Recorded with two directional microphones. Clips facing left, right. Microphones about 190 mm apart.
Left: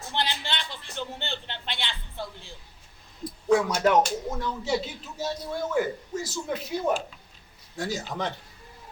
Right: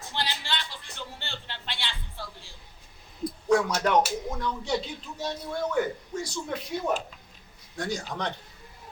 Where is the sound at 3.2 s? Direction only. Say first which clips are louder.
Left 1 dB; 5° left (ahead or behind).